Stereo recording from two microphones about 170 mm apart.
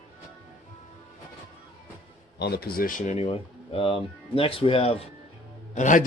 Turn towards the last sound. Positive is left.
turn(degrees=45)  # may be behind; listen again after turning